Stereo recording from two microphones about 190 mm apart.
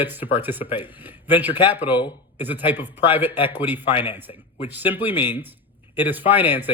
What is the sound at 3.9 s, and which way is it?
Speech, 25° left (ahead or behind).